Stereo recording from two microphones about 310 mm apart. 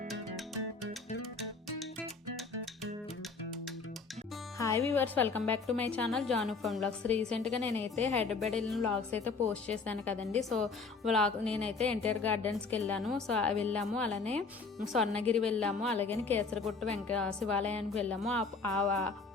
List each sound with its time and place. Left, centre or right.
0.1 s music: centre
4.5 s speech: centre
7.1 s a woman's voice: centre
8.5 s speech: centre
14.1 s a woman's voice: right
14.9 s speech: centre